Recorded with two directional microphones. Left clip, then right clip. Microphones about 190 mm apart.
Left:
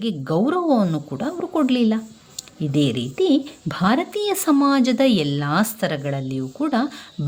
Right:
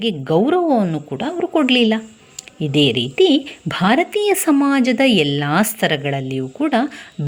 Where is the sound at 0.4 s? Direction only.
10° right (ahead or behind).